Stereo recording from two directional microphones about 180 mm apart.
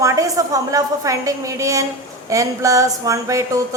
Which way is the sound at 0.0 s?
20° right (ahead or behind).